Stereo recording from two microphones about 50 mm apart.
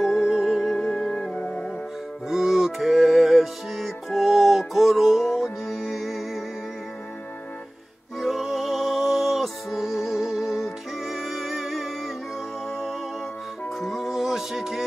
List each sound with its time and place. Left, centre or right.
0.0 s music: centre
0.7 s music: centre
1.4 s music: left
2.2 s music: centre
8.2 s music: centre